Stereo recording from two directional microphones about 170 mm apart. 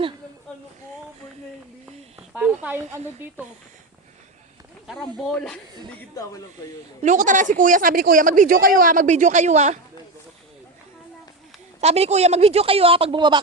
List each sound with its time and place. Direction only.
2.1 s snake: 10° right (ahead or behind)
4.9 s speech: 5° left (ahead or behind)
6.2 s speech: 20° left (ahead or behind)
7.0 s speech: 45° right (ahead or behind)
11.8 s speech: 40° right (ahead or behind)